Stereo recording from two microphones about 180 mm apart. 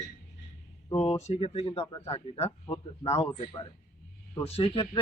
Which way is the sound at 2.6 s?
25° left (ahead or behind).